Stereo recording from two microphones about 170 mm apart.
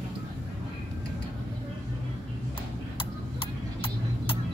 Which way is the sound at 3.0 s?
30° left (ahead or behind).